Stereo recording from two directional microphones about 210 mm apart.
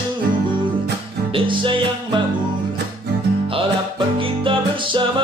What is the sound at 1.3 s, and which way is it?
Music, 25° right (ahead or behind).